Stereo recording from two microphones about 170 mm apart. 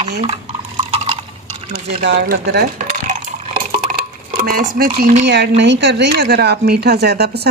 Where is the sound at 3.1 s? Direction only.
35° right (ahead or behind).